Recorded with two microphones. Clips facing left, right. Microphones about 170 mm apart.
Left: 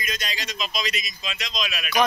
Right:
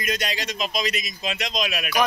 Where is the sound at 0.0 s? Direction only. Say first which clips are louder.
Right 5 dB; 60° right (ahead or behind).